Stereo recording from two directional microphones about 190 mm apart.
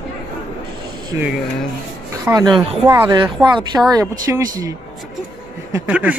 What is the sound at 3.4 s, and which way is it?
Speech, 25° right (ahead or behind).